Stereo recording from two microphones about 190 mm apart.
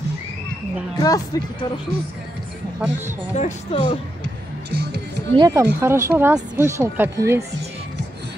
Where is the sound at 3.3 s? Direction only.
35° left (ahead or behind).